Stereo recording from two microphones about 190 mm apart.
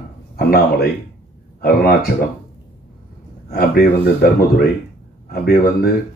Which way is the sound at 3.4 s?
55° left (ahead or behind).